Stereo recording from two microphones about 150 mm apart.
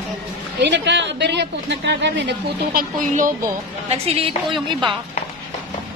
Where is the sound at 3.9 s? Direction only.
40° right (ahead or behind).